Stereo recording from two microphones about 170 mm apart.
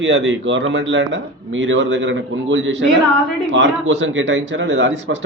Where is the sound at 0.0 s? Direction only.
90° right.